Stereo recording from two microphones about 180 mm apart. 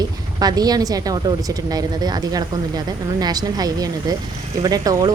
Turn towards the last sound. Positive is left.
turn(degrees=-20)  # may be behind; listen again after turning